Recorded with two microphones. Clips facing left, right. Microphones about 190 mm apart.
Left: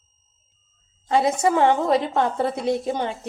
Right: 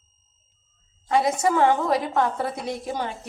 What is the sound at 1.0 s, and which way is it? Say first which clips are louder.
A woman's voice: left 2 dB; 25° left (ahead or behind).